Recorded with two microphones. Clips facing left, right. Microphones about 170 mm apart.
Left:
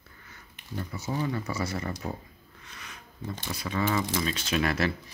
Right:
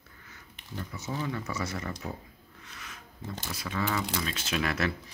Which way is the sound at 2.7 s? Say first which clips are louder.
Left 1 dB; 5° right (ahead or behind).